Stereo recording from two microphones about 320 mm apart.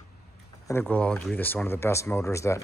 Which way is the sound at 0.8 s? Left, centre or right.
Centre.